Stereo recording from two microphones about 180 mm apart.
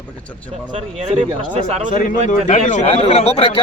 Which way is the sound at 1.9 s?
45° left (ahead or behind).